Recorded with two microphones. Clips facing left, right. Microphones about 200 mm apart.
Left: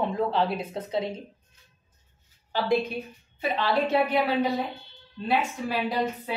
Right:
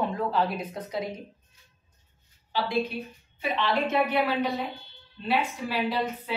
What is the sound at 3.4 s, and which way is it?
Speech, 35° left (ahead or behind).